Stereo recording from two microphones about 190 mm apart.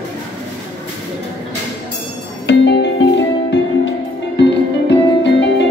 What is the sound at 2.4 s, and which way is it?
Music, 70° left (ahead or behind).